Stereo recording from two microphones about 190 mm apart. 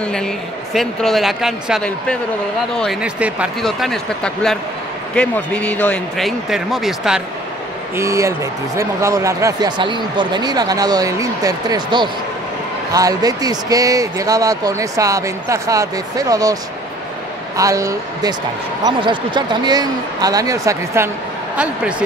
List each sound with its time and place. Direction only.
0.0 s speech: 5° left (ahead or behind)
7.9 s speech: 15° right (ahead or behind)
17.6 s speech: 15° right (ahead or behind)